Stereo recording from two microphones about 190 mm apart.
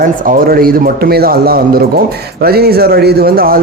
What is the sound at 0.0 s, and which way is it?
A man's voice, 45° right (ahead or behind).